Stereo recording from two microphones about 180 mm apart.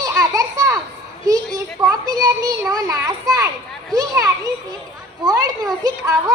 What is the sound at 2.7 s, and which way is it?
A child's voice, 20° right (ahead or behind).